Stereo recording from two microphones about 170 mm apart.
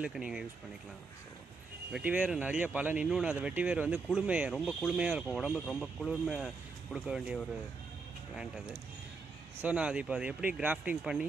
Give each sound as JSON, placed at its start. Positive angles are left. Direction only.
{"t": 0.0, "sound": "speech", "side_deg": -5}
{"t": 1.9, "sound": "speech", "side_deg": -5}
{"t": 9.6, "sound": "speech", "side_deg": -10}